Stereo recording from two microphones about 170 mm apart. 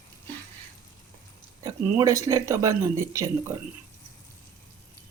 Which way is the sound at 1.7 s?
20° right (ahead or behind).